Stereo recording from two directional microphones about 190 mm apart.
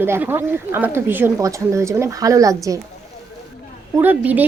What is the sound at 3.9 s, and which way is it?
Speech, 10° right (ahead or behind).